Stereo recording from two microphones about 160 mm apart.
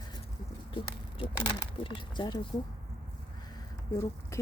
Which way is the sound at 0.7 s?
35° left (ahead or behind).